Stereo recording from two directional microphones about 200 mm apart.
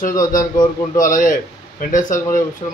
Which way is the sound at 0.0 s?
45° left (ahead or behind).